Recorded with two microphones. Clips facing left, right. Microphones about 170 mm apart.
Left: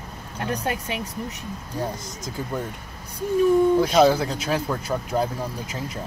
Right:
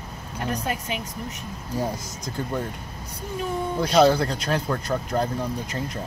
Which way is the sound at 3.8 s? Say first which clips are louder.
Left 1 dB; centre (ahead or behind).